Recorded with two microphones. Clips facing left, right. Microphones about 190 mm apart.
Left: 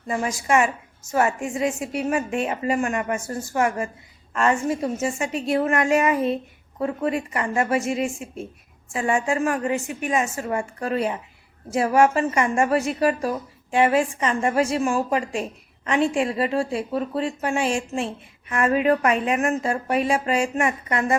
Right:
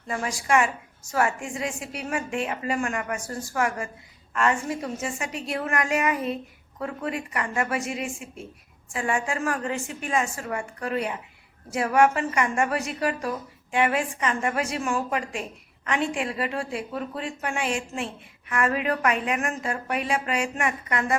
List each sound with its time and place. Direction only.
0.1 s a woman's voice: 25° left (ahead or behind)